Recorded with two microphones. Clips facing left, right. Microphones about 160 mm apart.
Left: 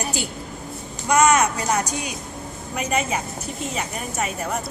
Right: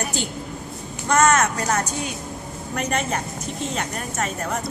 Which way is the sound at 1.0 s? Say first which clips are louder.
Left 1 dB; 15° left (ahead or behind).